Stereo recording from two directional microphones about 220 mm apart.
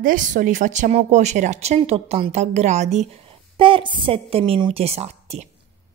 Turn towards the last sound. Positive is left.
turn(degrees=-30)  # may be behind; listen again after turning